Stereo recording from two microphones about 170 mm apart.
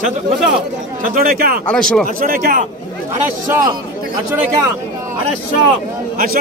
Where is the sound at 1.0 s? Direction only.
60° right (ahead or behind).